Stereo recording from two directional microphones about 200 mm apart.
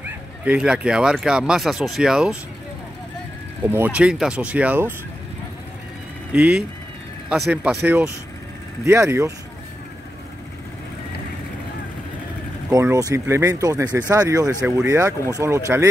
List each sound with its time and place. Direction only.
0.0 s speech: 5° right (ahead or behind)
3.6 s speech: 10° right (ahead or behind)
7.2 s speech: 5° right (ahead or behind)
12.8 s speech: 15° right (ahead or behind)